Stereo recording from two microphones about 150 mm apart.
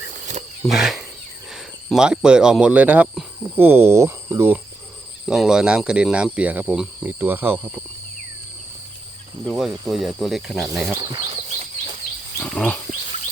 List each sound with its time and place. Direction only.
0.6 s speech: centre (ahead or behind)
5.3 s speech: 5° right (ahead or behind)
9.5 s speech: centre (ahead or behind)
11.4 s a sound: 45° right (ahead or behind)
12.4 s wild animals: 10° left (ahead or behind)